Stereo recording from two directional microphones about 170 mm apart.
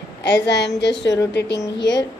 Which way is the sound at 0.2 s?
90° left.